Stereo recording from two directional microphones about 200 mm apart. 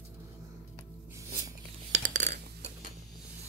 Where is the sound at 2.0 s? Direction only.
40° right (ahead or behind).